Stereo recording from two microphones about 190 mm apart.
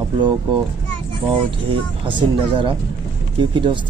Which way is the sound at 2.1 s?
25° right (ahead or behind).